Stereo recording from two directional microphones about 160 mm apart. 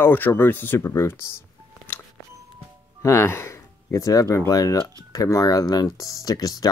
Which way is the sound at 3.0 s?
15° left (ahead or behind).